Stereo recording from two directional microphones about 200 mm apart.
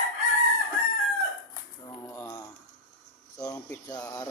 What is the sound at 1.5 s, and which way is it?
Typewriter, 15° left (ahead or behind).